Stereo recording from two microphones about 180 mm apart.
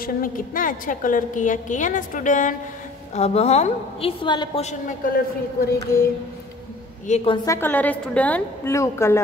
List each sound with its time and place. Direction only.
0.0 s a woman's voice: 50° left (ahead or behind); by 4.6 s 25° left (ahead or behind)
4.6 s a woman's voice: 50° left (ahead or behind)
7.1 s a woman's voice: 35° left (ahead or behind)
7.4 s a woman's voice: 15° left (ahead or behind)